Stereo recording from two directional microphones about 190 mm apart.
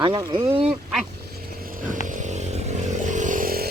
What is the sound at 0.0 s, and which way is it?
Speech, 25° right (ahead or behind).